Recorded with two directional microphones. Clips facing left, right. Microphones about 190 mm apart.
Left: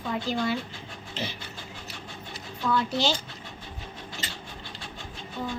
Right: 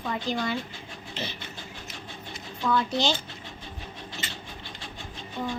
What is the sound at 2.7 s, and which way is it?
Speech, 5° left (ahead or behind).